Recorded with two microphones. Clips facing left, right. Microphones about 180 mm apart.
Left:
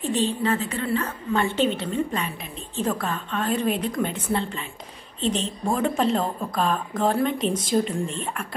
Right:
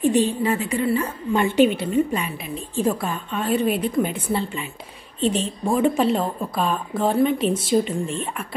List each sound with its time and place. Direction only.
0.0 s a woman's voice: 15° right (ahead or behind)
5.8 s speech: 5° right (ahead or behind)